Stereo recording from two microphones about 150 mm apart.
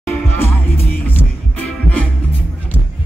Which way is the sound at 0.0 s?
10° left (ahead or behind).